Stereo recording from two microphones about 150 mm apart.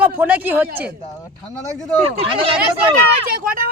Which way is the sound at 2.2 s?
35° right (ahead or behind).